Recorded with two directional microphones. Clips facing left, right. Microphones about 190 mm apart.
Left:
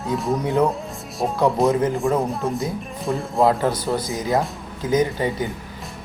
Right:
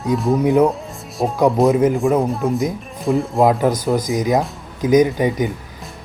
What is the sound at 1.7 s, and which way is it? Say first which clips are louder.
Speech: right 4 dB; 15° right (ahead or behind).